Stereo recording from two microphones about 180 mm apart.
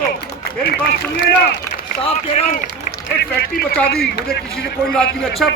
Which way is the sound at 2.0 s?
35° left (ahead or behind).